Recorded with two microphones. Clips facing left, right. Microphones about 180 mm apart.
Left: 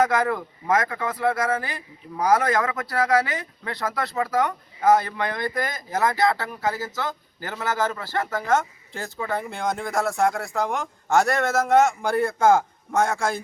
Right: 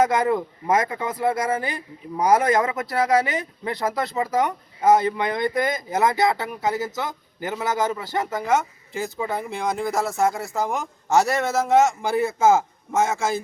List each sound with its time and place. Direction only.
0.0 s speech: 20° right (ahead or behind)
8.4 s speech: centre (ahead or behind)